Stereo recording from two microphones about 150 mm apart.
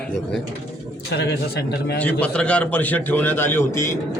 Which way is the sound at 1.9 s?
10° left (ahead or behind).